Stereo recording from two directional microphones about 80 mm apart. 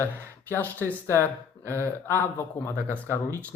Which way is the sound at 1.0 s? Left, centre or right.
Left.